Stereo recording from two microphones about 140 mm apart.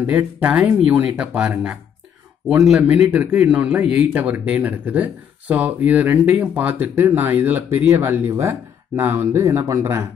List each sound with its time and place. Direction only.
0.0 s speech: 10° right (ahead or behind)